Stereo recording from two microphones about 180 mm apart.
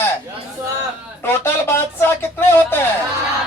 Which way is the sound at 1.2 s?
10° left (ahead or behind).